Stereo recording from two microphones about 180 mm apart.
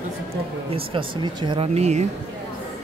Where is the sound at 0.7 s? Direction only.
30° right (ahead or behind).